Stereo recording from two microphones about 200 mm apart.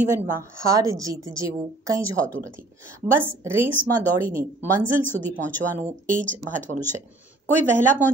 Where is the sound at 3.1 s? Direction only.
10° right (ahead or behind).